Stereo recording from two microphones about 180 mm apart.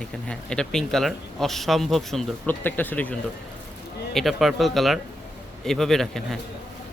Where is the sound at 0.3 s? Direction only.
5° left (ahead or behind).